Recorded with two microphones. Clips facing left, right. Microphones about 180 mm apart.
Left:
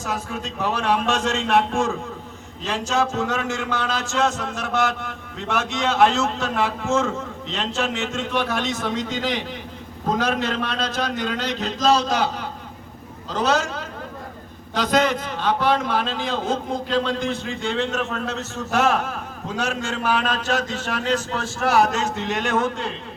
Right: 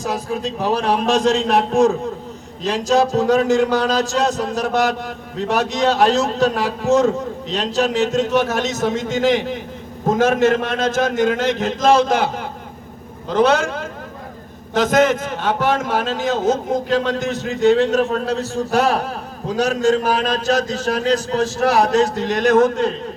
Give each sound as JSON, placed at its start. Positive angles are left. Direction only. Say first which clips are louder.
{"t": 0.0, "sound": "a man's voice", "louder": "right 6 dB", "side_deg": -35}